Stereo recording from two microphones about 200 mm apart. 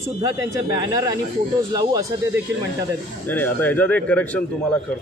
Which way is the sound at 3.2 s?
10° left (ahead or behind).